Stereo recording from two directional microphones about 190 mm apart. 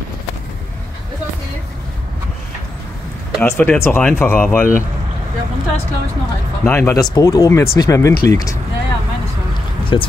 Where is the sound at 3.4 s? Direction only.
10° left (ahead or behind).